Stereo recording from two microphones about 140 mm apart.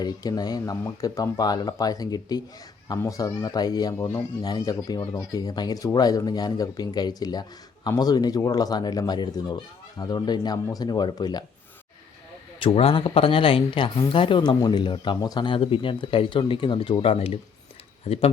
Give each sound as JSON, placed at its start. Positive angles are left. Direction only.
{"t": 0.0, "sound": "speech", "side_deg": 30}
{"t": 3.9, "sound": "speech", "side_deg": 15}
{"t": 4.4, "sound": "speech", "side_deg": 25}
{"t": 12.5, "sound": "speech", "side_deg": 40}